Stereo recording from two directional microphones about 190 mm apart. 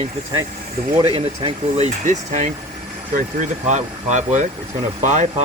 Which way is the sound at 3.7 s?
40° right (ahead or behind).